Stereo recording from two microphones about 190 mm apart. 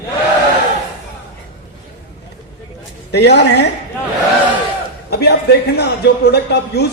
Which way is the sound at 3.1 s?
60° left (ahead or behind).